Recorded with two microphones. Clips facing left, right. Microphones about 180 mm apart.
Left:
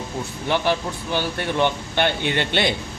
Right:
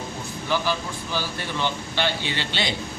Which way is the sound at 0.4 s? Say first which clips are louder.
Left 4 dB; 60° left (ahead or behind).